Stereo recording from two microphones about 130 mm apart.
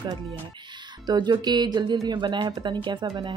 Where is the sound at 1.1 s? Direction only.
30° right (ahead or behind).